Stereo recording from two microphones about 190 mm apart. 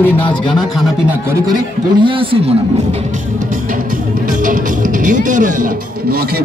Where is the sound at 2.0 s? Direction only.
25° right (ahead or behind).